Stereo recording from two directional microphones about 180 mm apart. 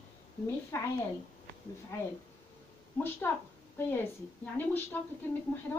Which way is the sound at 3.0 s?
10° left (ahead or behind).